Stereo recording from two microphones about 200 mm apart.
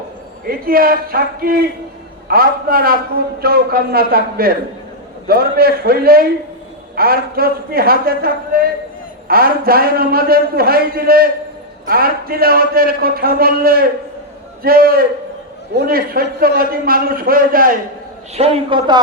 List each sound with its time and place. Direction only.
0.4 s a man's voice: 45° right (ahead or behind)
18.3 s a man's voice: 30° right (ahead or behind)